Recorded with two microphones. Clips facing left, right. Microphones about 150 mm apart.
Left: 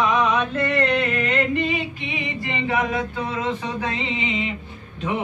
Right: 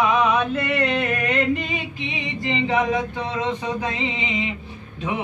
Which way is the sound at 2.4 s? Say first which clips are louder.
Right 3 dB; 20° right (ahead or behind).